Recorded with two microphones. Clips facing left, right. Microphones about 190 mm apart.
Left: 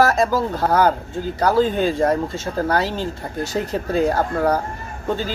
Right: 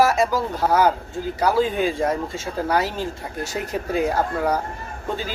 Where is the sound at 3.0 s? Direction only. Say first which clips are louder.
Left 2 dB; 35° left (ahead or behind).